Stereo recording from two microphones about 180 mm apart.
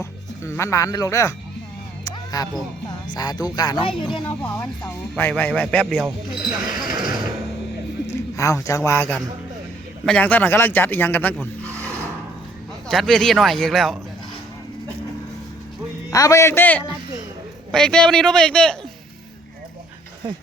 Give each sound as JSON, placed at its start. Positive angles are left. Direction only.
{"t": 0.0, "sound": "speech", "side_deg": 15}
{"t": 2.0, "sound": "a sound", "side_deg": 20}
{"t": 3.2, "sound": "speech", "side_deg": 20}
{"t": 4.6, "sound": "speech", "side_deg": 10}
{"t": 6.0, "sound": "speech", "side_deg": -20}
{"t": 8.0, "sound": "a man's voice", "side_deg": 15}
{"t": 12.9, "sound": "a man's voice", "side_deg": 0}
{"t": 16.0, "sound": "a man's voice", "side_deg": 20}